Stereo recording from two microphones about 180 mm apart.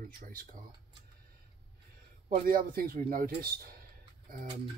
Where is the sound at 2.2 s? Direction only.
45° right (ahead or behind).